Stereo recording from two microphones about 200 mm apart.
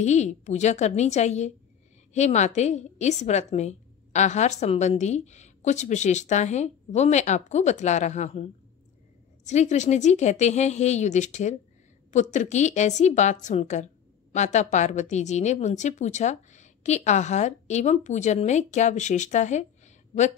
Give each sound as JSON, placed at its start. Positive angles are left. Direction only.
{"t": 0.0, "sound": "a woman's voice", "side_deg": 35}